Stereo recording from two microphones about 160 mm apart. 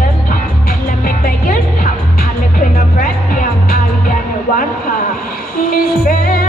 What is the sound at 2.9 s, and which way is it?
Music, 60° left (ahead or behind).